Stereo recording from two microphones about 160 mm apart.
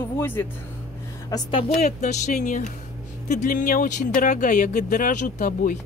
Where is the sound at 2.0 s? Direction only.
50° left (ahead or behind).